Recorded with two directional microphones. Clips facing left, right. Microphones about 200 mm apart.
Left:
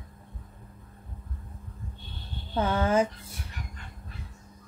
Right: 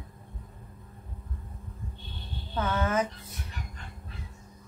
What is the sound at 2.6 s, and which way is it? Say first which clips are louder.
Speech: left 4 dB; 30° left (ahead or behind).